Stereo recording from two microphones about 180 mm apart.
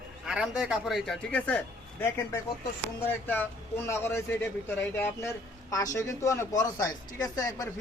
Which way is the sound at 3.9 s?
15° left (ahead or behind).